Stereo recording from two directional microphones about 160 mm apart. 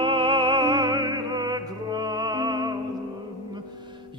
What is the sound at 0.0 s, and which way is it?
Music, 30° right (ahead or behind).